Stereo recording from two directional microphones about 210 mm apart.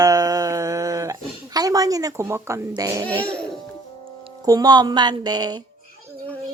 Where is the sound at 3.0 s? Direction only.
5° left (ahead or behind).